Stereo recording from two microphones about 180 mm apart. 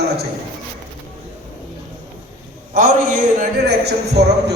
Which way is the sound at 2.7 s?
50° right (ahead or behind).